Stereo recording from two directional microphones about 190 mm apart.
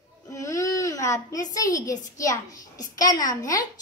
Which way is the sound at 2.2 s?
20° left (ahead or behind).